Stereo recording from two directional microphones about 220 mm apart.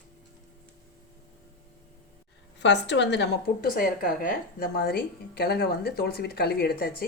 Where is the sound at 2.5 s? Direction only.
55° left (ahead or behind).